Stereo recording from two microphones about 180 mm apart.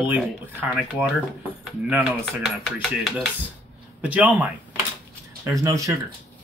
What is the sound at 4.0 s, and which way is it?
Speech, 10° right (ahead or behind).